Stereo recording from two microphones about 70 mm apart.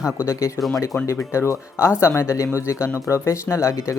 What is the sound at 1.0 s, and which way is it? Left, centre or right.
Speech, left.